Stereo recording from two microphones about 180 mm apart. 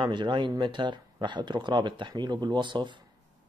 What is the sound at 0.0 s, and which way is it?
Speech, 25° right (ahead or behind).